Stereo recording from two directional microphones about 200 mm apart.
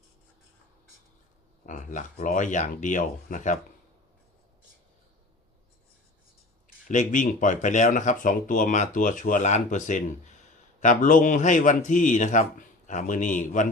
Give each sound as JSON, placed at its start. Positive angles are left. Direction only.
{"t": 1.6, "sound": "speech", "side_deg": 40}
{"t": 6.8, "sound": "speech", "side_deg": 40}